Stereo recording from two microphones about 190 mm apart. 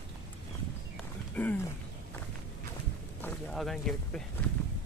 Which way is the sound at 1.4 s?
10° left (ahead or behind).